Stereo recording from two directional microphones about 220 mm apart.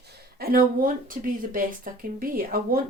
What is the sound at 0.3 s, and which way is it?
Speech, 40° right (ahead or behind).